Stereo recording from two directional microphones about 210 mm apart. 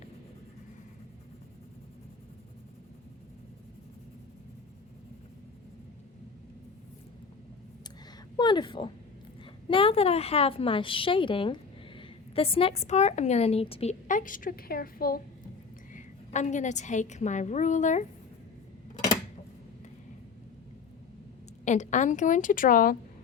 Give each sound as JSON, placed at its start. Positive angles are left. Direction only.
{"t": 8.4, "sound": "a woman's voice", "side_deg": 20}
{"t": 21.6, "sound": "a woman's voice", "side_deg": 35}